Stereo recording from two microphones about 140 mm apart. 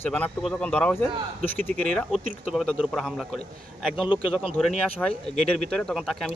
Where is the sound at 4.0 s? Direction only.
35° left (ahead or behind).